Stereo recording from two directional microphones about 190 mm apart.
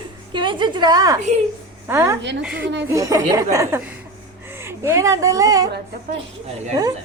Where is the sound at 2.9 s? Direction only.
15° right (ahead or behind).